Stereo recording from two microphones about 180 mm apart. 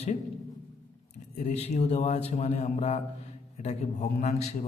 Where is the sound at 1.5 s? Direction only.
35° left (ahead or behind).